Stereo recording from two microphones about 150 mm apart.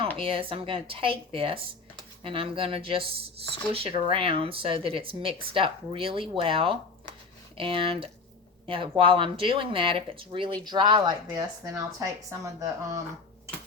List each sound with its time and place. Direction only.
0.2 s speech: 35° right (ahead or behind)